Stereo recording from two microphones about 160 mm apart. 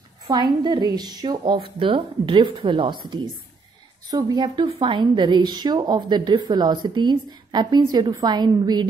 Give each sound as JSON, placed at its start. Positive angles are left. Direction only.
{"t": 0.3, "sound": "a woman's voice", "side_deg": -25}